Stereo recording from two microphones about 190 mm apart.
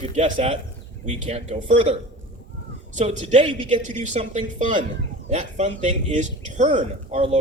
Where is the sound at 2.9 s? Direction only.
35° right (ahead or behind).